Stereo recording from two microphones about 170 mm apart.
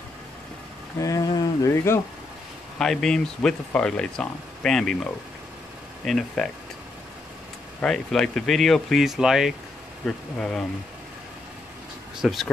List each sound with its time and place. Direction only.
0.9 s speech: 20° left (ahead or behind)
2.8 s speech: 5° left (ahead or behind)
7.8 s speech: centre (ahead or behind)
12.2 s speech: centre (ahead or behind)